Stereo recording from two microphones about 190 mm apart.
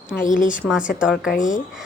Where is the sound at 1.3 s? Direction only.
45° left (ahead or behind).